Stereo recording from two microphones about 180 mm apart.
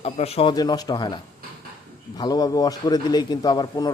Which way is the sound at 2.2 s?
20° left (ahead or behind).